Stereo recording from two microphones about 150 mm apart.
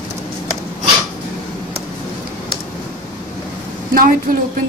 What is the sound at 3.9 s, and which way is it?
Speech, 75° right (ahead or behind).